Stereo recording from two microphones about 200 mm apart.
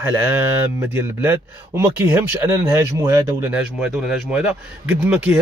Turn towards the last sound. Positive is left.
turn(degrees=-5)  # may be behind; listen again after turning